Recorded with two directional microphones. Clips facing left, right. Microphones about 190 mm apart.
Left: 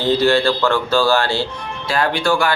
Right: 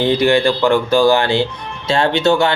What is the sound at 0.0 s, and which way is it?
Speech, 15° right (ahead or behind).